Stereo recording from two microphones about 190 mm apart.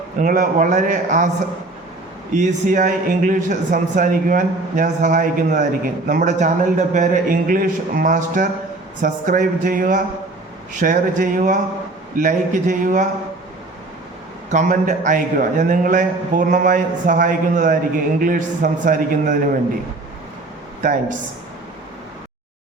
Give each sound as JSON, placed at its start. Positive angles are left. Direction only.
{"t": 0.2, "sound": "a man's voice", "side_deg": -45}
{"t": 2.3, "sound": "a man's voice", "side_deg": -40}
{"t": 14.5, "sound": "a man's voice", "side_deg": -45}